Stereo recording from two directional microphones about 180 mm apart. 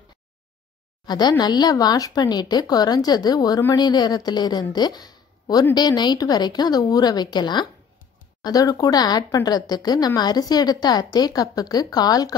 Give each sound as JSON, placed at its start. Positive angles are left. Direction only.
{"t": 1.0, "sound": "speech", "side_deg": 25}